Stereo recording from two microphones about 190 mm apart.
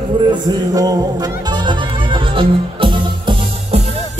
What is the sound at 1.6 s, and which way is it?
Music, 25° right (ahead or behind).